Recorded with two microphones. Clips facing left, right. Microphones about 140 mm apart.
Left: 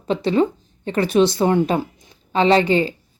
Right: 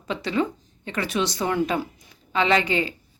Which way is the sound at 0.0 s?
30° left (ahead or behind).